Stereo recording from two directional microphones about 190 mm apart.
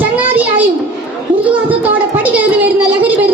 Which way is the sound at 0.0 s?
10° right (ahead or behind).